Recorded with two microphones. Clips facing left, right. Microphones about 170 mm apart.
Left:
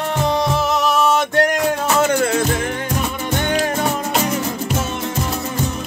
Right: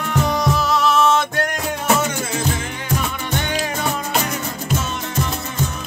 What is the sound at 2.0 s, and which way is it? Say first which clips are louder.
Music: left 6 dB; 60° left (ahead or behind).